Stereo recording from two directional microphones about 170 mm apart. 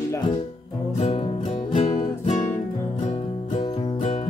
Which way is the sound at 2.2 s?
45° left (ahead or behind).